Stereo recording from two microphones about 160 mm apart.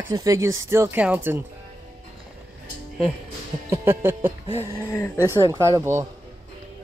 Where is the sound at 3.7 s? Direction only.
15° right (ahead or behind).